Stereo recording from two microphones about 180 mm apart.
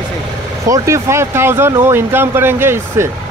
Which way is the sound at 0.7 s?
15° right (ahead or behind).